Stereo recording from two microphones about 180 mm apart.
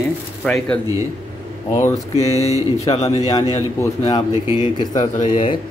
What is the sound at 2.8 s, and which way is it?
Speech, 20° left (ahead or behind).